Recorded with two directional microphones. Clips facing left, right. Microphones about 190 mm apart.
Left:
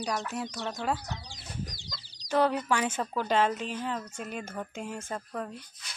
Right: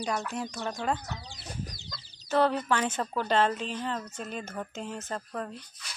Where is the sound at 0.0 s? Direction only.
Centre (ahead or behind).